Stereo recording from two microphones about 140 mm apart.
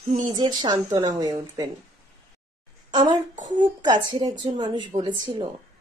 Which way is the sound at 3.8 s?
30° right (ahead or behind).